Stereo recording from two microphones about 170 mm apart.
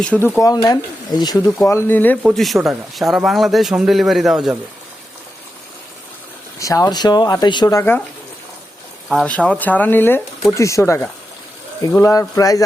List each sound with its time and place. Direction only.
0.0 s speech: 10° left (ahead or behind)
1.6 s speech: 15° left (ahead or behind)
2.2 s speech: centre (ahead or behind)
6.6 s speech: 20° left (ahead or behind)
9.2 s speech: 5° left (ahead or behind)